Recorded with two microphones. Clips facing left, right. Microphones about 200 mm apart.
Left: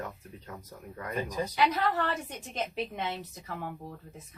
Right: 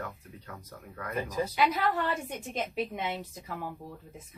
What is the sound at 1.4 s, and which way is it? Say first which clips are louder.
A woman's voice: even; 10° right (ahead or behind).